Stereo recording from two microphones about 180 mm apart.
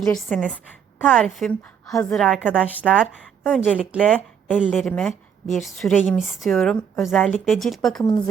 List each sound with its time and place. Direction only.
0.0 s a woman's voice: 5° left (ahead or behind)
3.0 s a woman's voice: 5° left (ahead or behind)